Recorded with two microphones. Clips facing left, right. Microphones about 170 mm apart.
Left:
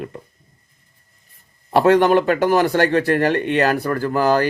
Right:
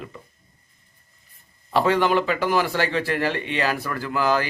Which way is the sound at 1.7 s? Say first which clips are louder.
Left 6 dB; 55° left (ahead or behind).